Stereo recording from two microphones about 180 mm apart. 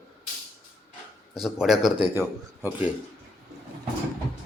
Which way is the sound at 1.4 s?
5° right (ahead or behind).